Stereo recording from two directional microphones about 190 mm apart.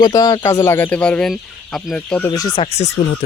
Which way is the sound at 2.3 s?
20° left (ahead or behind).